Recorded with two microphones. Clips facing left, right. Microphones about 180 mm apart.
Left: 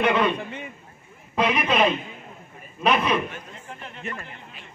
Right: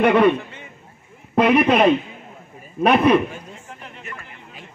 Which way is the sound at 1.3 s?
60° right (ahead or behind).